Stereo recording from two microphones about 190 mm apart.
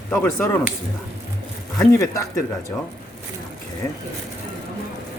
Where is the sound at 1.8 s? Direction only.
15° left (ahead or behind).